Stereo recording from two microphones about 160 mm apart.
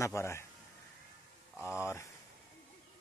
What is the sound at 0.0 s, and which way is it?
Speech, 15° left (ahead or behind).